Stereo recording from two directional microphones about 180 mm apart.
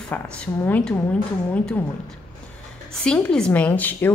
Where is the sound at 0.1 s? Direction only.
10° left (ahead or behind).